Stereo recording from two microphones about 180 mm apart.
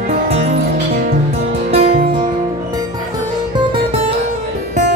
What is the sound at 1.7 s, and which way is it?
Music, 35° right (ahead or behind).